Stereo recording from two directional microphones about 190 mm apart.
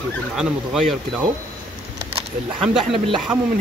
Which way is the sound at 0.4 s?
Centre (ahead or behind).